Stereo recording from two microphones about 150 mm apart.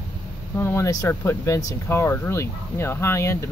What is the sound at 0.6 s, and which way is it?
Speech, 20° left (ahead or behind).